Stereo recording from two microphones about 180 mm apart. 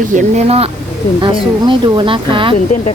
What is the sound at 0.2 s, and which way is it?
Speech, 35° right (ahead or behind).